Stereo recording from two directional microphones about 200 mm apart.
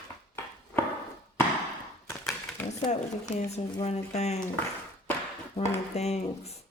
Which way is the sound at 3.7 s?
30° left (ahead or behind).